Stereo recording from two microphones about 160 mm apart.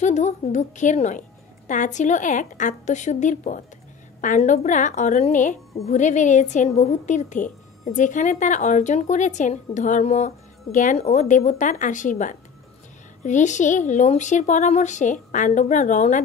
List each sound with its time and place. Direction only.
0.0 s a woman's voice: 45° left (ahead or behind)